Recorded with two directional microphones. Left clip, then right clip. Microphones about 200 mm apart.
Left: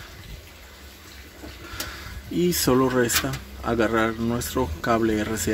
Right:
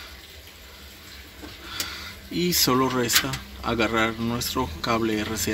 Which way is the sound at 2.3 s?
5° left (ahead or behind).